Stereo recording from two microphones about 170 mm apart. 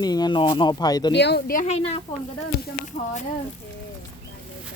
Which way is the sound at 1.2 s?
90° left.